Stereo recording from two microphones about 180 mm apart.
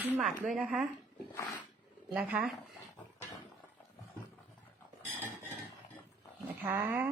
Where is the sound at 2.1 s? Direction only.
5° right (ahead or behind).